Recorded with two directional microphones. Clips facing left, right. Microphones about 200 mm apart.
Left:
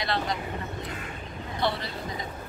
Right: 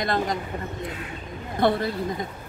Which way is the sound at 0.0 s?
45° right (ahead or behind).